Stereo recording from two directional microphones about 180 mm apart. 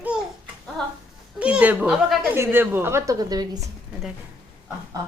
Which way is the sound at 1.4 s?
5° right (ahead or behind).